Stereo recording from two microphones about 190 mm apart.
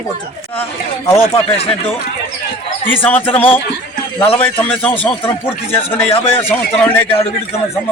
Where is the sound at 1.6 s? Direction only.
30° left (ahead or behind).